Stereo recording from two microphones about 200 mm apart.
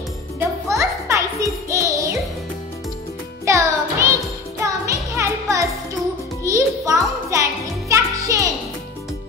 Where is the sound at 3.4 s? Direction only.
15° right (ahead or behind).